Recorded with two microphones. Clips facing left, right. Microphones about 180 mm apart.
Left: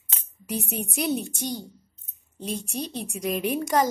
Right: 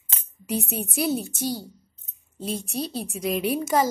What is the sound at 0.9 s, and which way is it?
Speech, centre (ahead or behind).